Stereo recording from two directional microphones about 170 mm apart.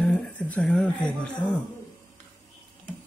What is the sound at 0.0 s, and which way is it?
Speech, 5° left (ahead or behind).